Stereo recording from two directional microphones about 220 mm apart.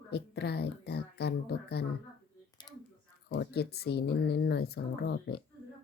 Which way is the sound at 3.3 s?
50° left (ahead or behind).